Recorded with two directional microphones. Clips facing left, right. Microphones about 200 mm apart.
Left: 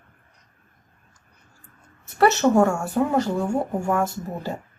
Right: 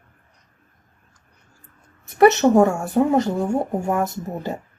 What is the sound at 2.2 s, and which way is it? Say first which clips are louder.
Speech: right 4 dB; 20° right (ahead or behind).